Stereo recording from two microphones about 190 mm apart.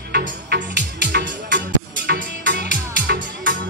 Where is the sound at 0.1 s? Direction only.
60° right (ahead or behind).